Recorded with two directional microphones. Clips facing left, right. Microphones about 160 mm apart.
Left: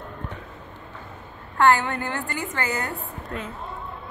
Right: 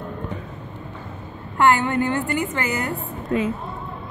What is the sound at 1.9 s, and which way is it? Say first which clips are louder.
Speech: right 7 dB; 15° right (ahead or behind).